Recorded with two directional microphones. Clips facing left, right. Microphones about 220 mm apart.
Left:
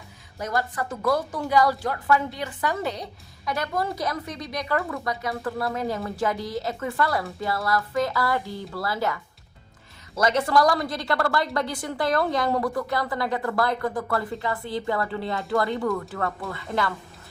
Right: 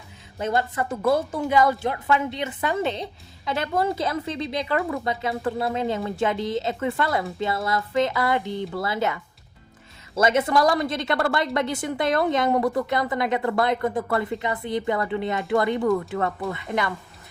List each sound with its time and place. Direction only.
0.3 s a woman's voice: 25° right (ahead or behind)
10.2 s a woman's voice: 20° right (ahead or behind)